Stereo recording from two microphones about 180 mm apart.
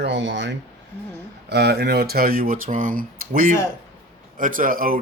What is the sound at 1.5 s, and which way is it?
Speech, 65° right (ahead or behind).